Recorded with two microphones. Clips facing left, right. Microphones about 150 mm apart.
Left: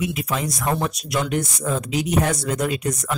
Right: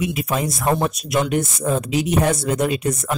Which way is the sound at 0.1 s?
25° right (ahead or behind).